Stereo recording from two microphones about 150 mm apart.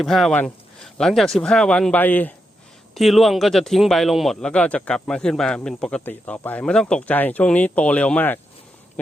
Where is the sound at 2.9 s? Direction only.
Centre (ahead or behind).